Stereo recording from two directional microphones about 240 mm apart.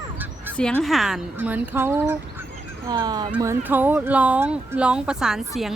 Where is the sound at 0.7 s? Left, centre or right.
Centre.